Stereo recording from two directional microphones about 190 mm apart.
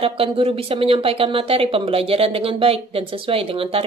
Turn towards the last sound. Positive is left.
turn(degrees=-30)  # may be behind; listen again after turning